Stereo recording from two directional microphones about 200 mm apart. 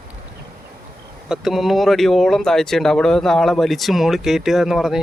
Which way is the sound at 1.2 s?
Centre (ahead or behind).